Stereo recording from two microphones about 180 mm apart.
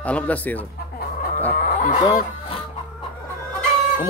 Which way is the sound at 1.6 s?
45° left (ahead or behind).